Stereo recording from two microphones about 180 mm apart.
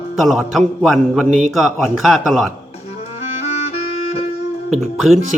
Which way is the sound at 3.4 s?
35° left (ahead or behind).